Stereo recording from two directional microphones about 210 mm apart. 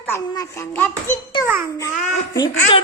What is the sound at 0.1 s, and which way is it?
Speech, 10° left (ahead or behind).